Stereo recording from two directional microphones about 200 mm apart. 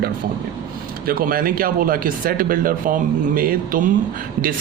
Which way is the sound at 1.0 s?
45° right (ahead or behind).